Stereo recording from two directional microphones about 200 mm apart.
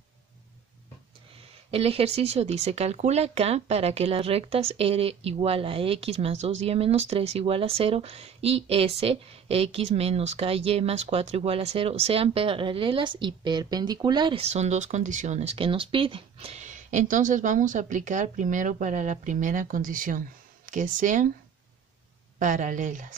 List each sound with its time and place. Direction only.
1.7 s speech: 30° right (ahead or behind)
22.4 s speech: 40° right (ahead or behind)